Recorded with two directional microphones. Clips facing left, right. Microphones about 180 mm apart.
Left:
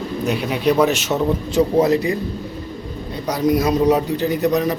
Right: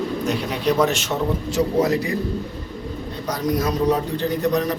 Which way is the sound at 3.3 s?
10° left (ahead or behind).